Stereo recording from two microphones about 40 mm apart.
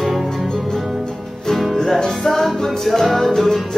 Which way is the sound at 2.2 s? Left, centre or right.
Centre.